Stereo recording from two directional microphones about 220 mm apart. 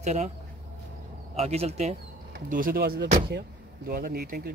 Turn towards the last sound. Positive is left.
turn(degrees=-45)  # may be behind; listen again after turning